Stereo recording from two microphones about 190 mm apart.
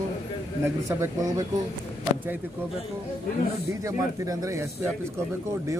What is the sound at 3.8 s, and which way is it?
Speech, 15° right (ahead or behind).